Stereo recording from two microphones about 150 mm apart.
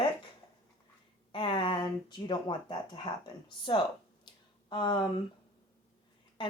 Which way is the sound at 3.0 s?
30° left (ahead or behind).